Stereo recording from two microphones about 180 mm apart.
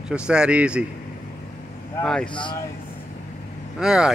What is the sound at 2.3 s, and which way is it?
Speech, 25° left (ahead or behind).